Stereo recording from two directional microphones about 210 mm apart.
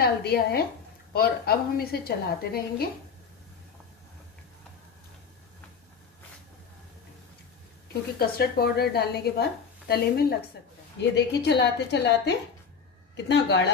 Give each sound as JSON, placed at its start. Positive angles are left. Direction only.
{"t": 0.0, "sound": "a woman's voice", "side_deg": 50}
{"t": 8.2, "sound": "a woman's voice", "side_deg": 45}